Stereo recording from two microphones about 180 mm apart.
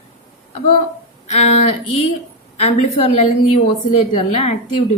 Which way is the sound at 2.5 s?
35° left (ahead or behind).